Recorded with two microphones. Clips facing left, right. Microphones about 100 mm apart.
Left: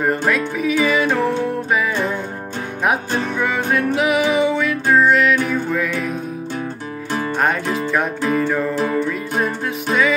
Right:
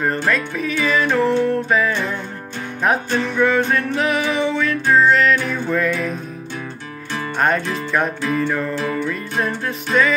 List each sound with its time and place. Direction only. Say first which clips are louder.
0.0 s music: left 2 dB; 10° left (ahead or behind)
3.3 s music: right 4 dB; 10° left (ahead or behind)
7.3 s music: right 2 dB; 5° left (ahead or behind)
8.7 s music: left 3 dB; 30° left (ahead or behind)